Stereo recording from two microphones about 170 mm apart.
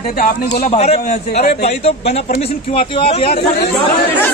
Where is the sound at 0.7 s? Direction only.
40° left (ahead or behind).